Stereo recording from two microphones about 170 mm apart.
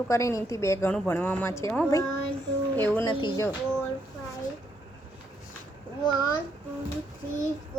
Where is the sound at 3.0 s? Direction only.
25° left (ahead or behind).